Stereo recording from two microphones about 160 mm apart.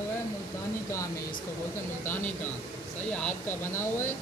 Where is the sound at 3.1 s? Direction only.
10° left (ahead or behind).